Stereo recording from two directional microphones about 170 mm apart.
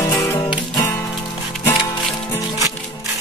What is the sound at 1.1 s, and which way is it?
Music, centre (ahead or behind).